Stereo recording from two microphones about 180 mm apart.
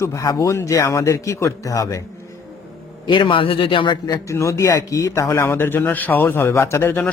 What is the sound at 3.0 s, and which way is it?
A man's voice, 30° left (ahead or behind).